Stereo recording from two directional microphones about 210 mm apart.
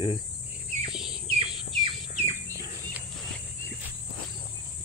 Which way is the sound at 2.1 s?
30° right (ahead or behind).